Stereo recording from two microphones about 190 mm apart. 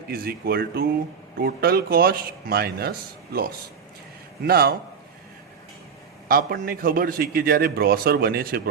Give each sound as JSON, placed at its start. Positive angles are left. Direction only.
{"t": 0.1, "sound": "a man's voice", "side_deg": -55}
{"t": 4.4, "sound": "a man's voice", "side_deg": -55}
{"t": 6.2, "sound": "a man's voice", "side_deg": -50}